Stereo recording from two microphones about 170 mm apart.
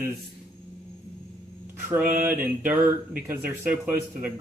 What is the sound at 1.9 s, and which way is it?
A man's voice, 10° right (ahead or behind).